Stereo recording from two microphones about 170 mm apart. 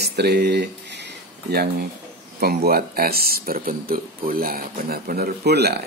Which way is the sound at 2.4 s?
65° right (ahead or behind).